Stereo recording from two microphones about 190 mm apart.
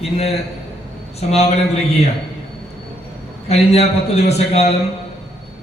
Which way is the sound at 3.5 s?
35° left (ahead or behind).